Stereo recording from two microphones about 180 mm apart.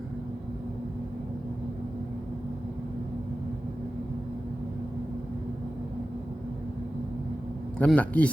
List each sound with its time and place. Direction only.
7.8 s speech: 10° left (ahead or behind)